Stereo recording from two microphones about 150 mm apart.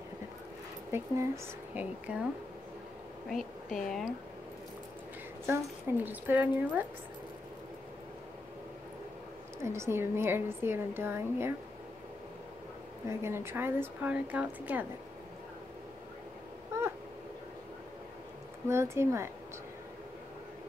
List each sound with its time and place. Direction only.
0.9 s a woman's voice: 20° right (ahead or behind)
3.3 s speech: centre (ahead or behind)
5.5 s a woman's voice: 15° right (ahead or behind)
9.6 s a woman's voice: 20° right (ahead or behind)
13.1 s a woman's voice: 15° right (ahead or behind)
16.7 s cat: 15° right (ahead or behind)
18.7 s a woman's voice: 20° right (ahead or behind)